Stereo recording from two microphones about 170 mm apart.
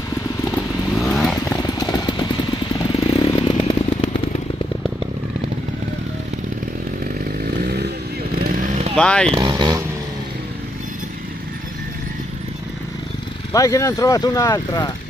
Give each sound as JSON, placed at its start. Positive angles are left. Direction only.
{"t": 0.9, "sound": "vehicle", "side_deg": 0}
{"t": 1.8, "sound": "vehicle", "side_deg": 25}
{"t": 3.0, "sound": "chainsaw", "side_deg": 35}
{"t": 7.3, "sound": "chainsaw", "side_deg": -70}
{"t": 8.5, "sound": "chainsaw", "side_deg": -50}
{"t": 8.9, "sound": "speech", "side_deg": 5}
{"t": 9.3, "sound": "vehicle", "side_deg": -25}
{"t": 13.5, "sound": "speech", "side_deg": 20}